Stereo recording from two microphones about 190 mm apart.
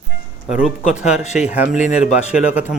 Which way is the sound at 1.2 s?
35° left (ahead or behind).